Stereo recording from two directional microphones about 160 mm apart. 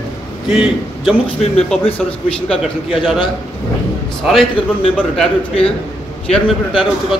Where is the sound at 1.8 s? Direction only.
35° left (ahead or behind).